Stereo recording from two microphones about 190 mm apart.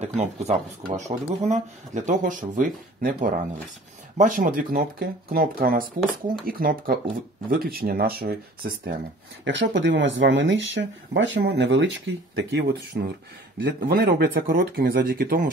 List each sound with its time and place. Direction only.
0.0 s speech: 35° right (ahead or behind)